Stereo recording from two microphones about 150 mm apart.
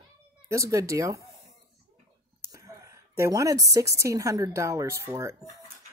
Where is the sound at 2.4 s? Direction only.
20° right (ahead or behind).